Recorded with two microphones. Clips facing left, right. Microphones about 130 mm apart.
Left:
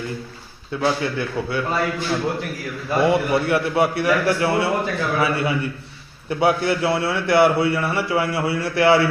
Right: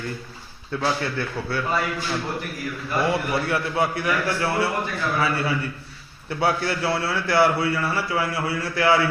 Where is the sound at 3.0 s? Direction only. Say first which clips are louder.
Left 5 dB; 20° left (ahead or behind).